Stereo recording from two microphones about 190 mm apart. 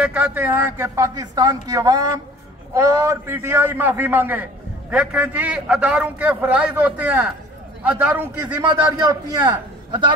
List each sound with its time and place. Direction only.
0.0 s a man's voice: 10° right (ahead or behind); by 10.1 s 25° right (ahead or behind)